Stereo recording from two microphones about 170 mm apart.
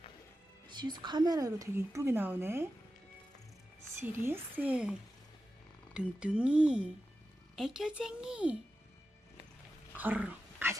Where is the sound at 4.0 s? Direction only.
15° right (ahead or behind).